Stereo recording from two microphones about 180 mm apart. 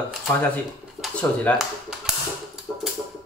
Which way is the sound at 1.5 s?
10° left (ahead or behind).